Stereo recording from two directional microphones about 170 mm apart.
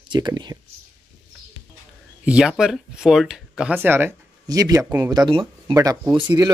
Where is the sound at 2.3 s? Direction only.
5° right (ahead or behind).